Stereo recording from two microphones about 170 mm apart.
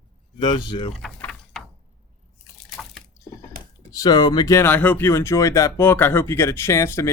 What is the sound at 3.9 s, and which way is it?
Speech, 20° left (ahead or behind).